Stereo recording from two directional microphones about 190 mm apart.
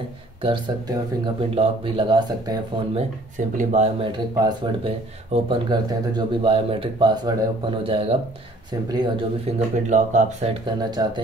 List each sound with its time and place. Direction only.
0.4 s speech: 25° right (ahead or behind)
3.3 s speech: 40° right (ahead or behind)
4.4 s speech: 25° right (ahead or behind)
9.5 s speech: 35° right (ahead or behind)
10.5 s speech: 20° right (ahead or behind)